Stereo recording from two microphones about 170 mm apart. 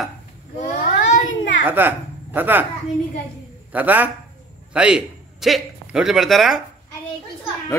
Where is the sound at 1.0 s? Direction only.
90° left.